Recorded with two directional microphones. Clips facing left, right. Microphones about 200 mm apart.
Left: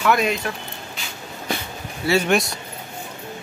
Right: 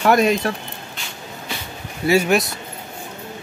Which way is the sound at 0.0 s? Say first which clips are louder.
Right 4 dB; 40° right (ahead or behind).